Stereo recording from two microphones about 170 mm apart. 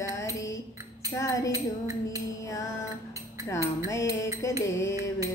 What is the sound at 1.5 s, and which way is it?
Music, 20° right (ahead or behind).